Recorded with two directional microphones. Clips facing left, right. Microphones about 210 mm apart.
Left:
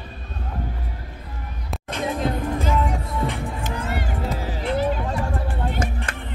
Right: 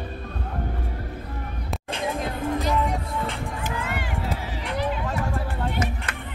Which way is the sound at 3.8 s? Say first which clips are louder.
Left 2 dB; 40° left (ahead or behind).